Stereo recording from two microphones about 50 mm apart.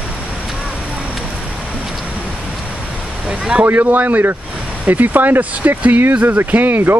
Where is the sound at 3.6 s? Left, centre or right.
Right.